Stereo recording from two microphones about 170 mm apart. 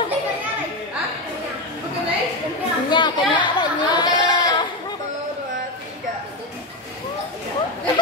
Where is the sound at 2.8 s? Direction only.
25° left (ahead or behind).